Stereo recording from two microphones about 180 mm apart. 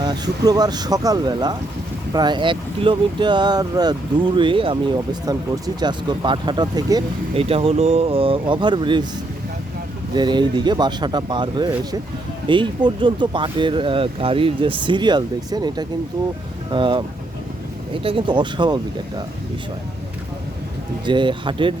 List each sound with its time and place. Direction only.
0.0 s speech: 20° right (ahead or behind)
7.3 s speech: 30° right (ahead or behind)
10.2 s speech: 25° right (ahead or behind)
21.0 s speech: 25° right (ahead or behind)